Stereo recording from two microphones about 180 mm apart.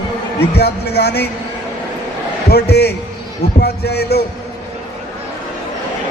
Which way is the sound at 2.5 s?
65° left (ahead or behind).